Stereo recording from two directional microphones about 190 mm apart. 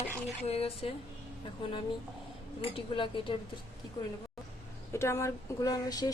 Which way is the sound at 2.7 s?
25° left (ahead or behind).